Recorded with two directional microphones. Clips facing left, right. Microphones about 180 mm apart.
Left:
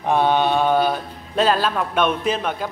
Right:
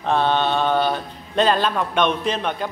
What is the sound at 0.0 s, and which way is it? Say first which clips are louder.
Speech: left 2 dB; 10° left (ahead or behind).